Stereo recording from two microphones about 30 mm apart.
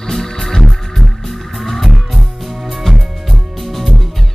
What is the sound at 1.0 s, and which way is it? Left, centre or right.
Music, centre.